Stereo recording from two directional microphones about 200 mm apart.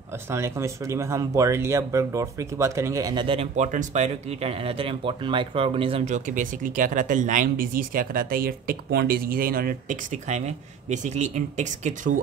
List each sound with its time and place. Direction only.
0.3 s speech: 15° right (ahead or behind); by 12.2 s 40° right (ahead or behind)